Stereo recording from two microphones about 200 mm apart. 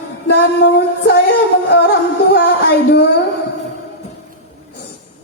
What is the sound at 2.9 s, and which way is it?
Music, 55° left (ahead or behind).